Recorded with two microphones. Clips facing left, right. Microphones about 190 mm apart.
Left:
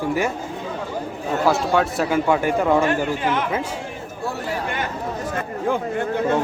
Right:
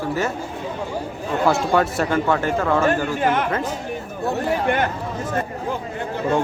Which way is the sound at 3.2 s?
50° right (ahead or behind).